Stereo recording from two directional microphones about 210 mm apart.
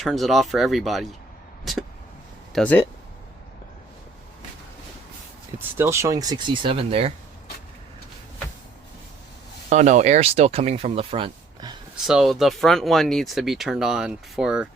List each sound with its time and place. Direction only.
0.0 s speech: centre (ahead or behind)
5.5 s speech: 10° right (ahead or behind)
9.6 s speech: 35° right (ahead or behind)
12.0 s speech: centre (ahead or behind)